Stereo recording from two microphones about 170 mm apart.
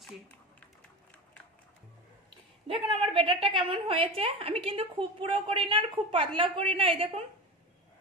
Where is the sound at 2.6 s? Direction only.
30° right (ahead or behind).